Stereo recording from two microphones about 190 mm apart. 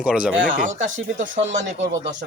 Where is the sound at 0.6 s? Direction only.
40° right (ahead or behind).